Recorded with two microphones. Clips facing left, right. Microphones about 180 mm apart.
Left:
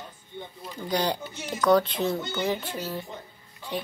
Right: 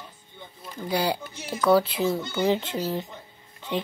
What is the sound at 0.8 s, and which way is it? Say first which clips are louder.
Speech: right 1 dB; 5° right (ahead or behind).